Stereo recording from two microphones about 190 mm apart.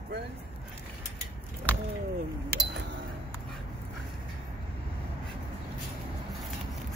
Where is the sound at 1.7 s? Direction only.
5° left (ahead or behind).